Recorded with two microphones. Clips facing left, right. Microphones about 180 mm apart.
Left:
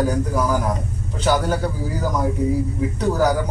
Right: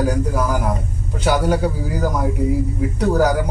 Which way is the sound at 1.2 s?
10° right (ahead or behind).